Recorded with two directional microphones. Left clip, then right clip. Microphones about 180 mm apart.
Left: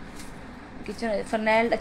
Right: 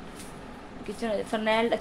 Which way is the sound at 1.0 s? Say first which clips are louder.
Left 2 dB; 5° left (ahead or behind).